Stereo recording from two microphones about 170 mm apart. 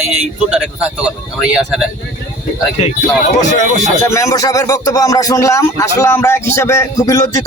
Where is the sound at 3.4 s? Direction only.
45° left (ahead or behind).